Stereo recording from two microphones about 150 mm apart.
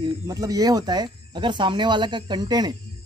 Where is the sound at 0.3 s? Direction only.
25° right (ahead or behind).